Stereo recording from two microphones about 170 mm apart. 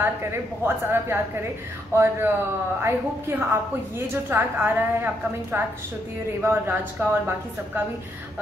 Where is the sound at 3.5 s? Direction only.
15° right (ahead or behind).